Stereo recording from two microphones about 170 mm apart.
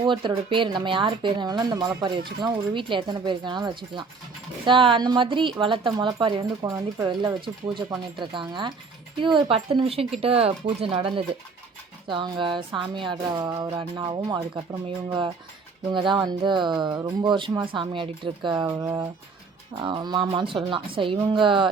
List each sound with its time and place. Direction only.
0.0 s a woman's voice: 30° right (ahead or behind)
15.9 s a woman's voice: 30° right (ahead or behind)